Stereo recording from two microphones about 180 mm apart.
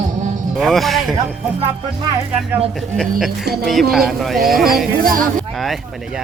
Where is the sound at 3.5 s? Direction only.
65° right (ahead or behind).